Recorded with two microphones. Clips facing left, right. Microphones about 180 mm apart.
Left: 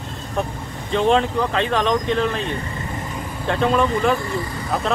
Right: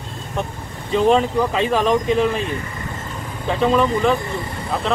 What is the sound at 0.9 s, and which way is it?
Speech, 5° right (ahead or behind).